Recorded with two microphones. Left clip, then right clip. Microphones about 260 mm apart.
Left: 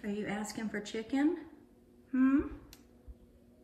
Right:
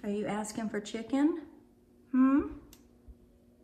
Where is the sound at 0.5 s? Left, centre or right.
Centre.